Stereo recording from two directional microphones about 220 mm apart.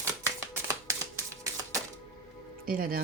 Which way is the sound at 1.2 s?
15° right (ahead or behind).